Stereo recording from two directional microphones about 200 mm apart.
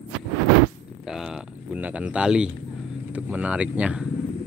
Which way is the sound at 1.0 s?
5° right (ahead or behind).